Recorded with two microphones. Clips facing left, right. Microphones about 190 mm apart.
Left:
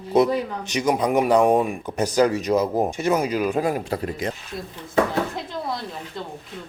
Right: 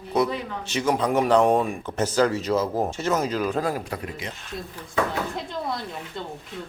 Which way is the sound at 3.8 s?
30° left (ahead or behind).